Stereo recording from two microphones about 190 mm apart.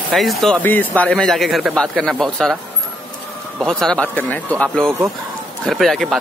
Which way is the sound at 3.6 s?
5° left (ahead or behind).